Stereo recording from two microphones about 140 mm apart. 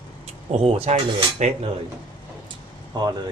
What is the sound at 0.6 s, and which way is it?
Speech, 45° right (ahead or behind).